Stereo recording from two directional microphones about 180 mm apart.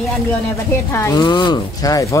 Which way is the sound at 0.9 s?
20° left (ahead or behind).